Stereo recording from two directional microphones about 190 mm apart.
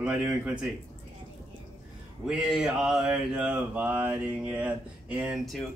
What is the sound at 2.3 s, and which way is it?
Mantra, 5° right (ahead or behind).